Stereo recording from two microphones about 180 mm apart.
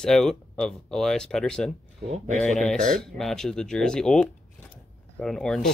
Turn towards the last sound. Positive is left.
turn(degrees=5)  # may be behind; listen again after turning